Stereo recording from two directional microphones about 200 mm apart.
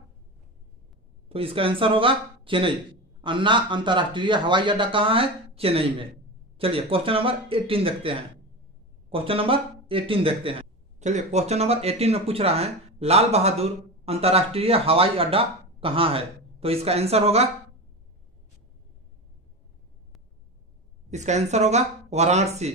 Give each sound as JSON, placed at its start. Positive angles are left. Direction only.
{"t": 1.3, "sound": "a man's voice", "side_deg": -25}
{"t": 21.1, "sound": "speech", "side_deg": -35}